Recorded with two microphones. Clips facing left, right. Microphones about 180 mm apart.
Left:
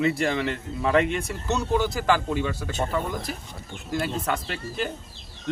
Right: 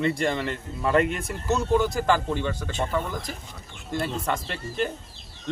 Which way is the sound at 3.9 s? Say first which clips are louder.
Left 1 dB; centre (ahead or behind).